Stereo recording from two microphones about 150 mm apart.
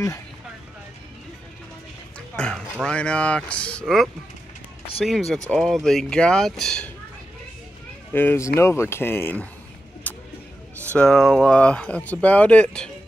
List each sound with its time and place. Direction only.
2.1 s speech: 5° left (ahead or behind)
8.1 s speech: 15° left (ahead or behind)
10.1 s a sound: 10° left (ahead or behind)
11.0 s speech: centre (ahead or behind)